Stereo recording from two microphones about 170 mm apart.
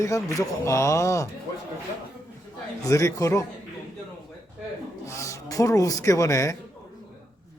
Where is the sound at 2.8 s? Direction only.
20° left (ahead or behind).